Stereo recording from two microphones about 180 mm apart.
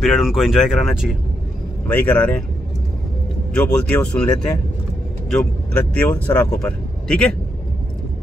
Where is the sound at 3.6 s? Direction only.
5° left (ahead or behind).